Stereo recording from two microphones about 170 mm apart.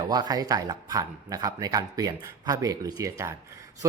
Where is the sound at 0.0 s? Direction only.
25° right (ahead or behind).